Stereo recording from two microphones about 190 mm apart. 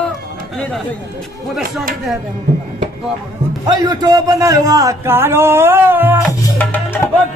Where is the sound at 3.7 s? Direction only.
20° right (ahead or behind).